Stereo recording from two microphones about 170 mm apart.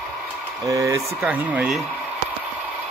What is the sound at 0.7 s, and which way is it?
Speech, 20° right (ahead or behind).